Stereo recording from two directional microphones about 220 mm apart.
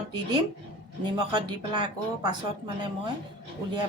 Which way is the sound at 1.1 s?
20° right (ahead or behind).